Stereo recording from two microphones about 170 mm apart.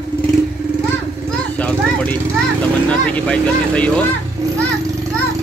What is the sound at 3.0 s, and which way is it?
Speech, 5° left (ahead or behind).